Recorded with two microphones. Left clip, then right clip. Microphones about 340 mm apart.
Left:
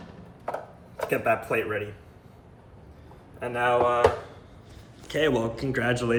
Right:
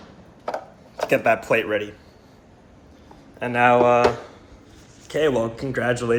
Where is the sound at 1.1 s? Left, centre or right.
Centre.